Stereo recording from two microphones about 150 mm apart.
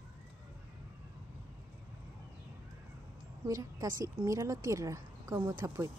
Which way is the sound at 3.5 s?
25° right (ahead or behind).